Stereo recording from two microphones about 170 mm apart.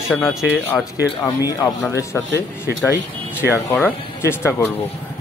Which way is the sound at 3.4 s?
15° left (ahead or behind).